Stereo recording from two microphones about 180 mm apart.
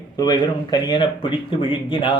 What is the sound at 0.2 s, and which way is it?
A man's voice, 25° left (ahead or behind).